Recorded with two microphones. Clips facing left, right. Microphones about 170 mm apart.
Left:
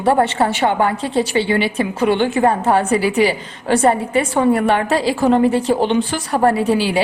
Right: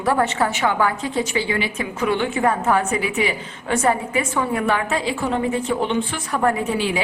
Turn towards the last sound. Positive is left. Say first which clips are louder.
# left 5 dB
turn(degrees=35)  # may be behind; listen again after turning